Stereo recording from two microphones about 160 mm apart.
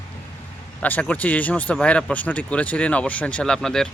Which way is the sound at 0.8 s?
10° left (ahead or behind).